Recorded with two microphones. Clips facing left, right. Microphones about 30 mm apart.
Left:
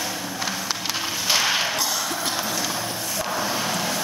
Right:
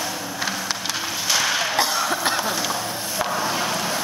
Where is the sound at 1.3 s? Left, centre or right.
Centre.